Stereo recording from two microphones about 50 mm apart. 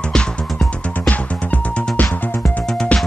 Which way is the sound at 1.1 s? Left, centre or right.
Left.